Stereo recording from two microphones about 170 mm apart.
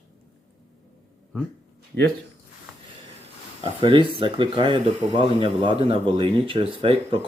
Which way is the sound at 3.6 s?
30° right (ahead or behind).